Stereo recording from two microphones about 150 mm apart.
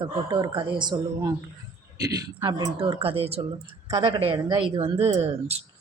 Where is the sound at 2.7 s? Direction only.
35° right (ahead or behind).